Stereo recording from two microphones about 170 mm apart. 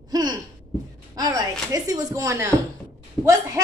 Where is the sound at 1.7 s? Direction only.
20° right (ahead or behind).